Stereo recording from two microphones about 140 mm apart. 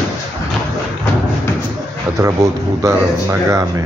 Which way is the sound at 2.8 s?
20° right (ahead or behind).